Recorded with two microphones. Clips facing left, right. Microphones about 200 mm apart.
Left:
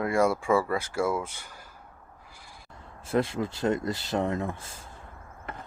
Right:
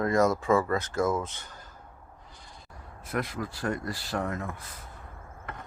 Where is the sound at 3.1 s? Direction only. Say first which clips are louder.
Left 6 dB; 25° left (ahead or behind).